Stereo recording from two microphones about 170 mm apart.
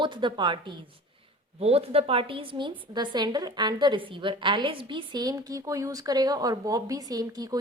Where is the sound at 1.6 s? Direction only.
35° right (ahead or behind).